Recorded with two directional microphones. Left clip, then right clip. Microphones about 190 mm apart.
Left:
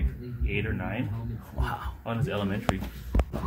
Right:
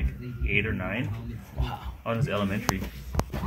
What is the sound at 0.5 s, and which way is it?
Speech, 10° left (ahead or behind).